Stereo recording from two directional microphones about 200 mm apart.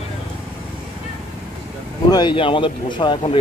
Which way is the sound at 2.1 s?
25° left (ahead or behind).